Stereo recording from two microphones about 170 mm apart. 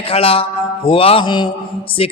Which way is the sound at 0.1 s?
35° left (ahead or behind).